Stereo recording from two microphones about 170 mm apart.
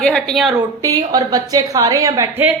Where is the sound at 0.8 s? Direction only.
20° right (ahead or behind).